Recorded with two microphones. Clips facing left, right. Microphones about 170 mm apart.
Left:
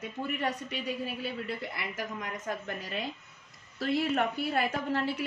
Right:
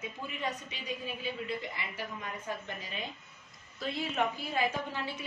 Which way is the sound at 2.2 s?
75° left (ahead or behind).